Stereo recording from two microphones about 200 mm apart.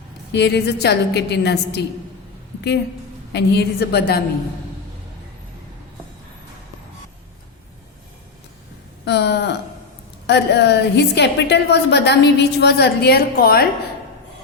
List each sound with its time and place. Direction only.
0.3 s a woman's voice: 55° left (ahead or behind)
3.3 s a woman's voice: 55° left (ahead or behind)
9.0 s a woman's voice: 55° left (ahead or behind)